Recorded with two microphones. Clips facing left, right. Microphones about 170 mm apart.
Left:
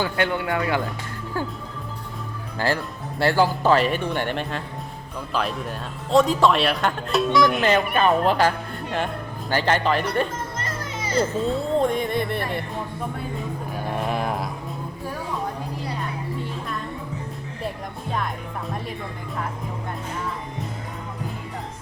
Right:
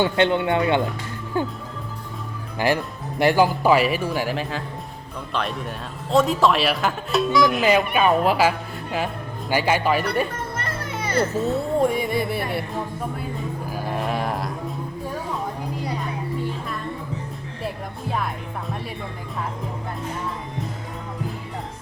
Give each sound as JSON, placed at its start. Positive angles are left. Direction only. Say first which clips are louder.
{"t": 0.0, "sound": "speech", "louder": "right 4 dB", "side_deg": -25}
{"t": 2.6, "sound": "speech", "louder": "right 3 dB", "side_deg": -15}
{"t": 10.6, "sound": "children playing", "louder": "right 2 dB", "side_deg": -60}
{"t": 11.4, "sound": "speech", "louder": "right 1 dB", "side_deg": -5}
{"t": 13.7, "sound": "speech", "louder": "even", "side_deg": 0}